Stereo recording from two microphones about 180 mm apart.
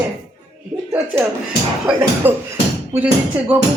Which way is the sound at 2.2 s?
10° right (ahead or behind).